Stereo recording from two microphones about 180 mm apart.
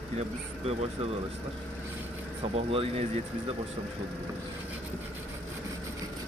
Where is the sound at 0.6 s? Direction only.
35° right (ahead or behind).